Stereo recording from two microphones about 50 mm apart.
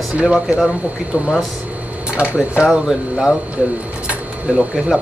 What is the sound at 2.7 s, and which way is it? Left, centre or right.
Speech, centre.